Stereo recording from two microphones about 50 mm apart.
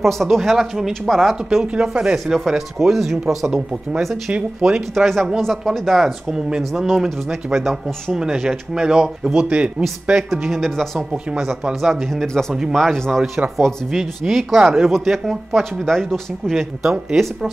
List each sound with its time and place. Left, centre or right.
0.0 s speech: centre
1.8 s speech: centre
4.3 s speech: centre
4.7 s speech: centre
7.5 s speech: centre; by 9.8 s right
10.3 s speech: centre
11.3 s speech: centre
13.8 s speech: centre
16.8 s speech: centre